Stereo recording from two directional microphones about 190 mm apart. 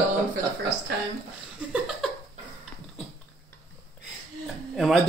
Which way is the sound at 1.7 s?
Centre (ahead or behind).